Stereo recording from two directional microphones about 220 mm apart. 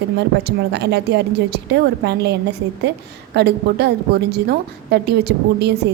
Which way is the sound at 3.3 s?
50° right (ahead or behind).